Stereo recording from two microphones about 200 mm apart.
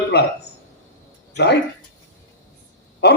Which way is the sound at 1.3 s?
55° left (ahead or behind).